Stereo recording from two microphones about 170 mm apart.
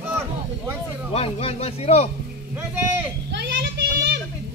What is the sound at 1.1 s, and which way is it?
Speech, 35° left (ahead or behind).